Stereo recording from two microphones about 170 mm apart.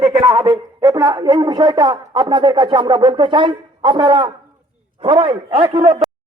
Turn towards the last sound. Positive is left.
turn(degrees=-30)  # may be behind; listen again after turning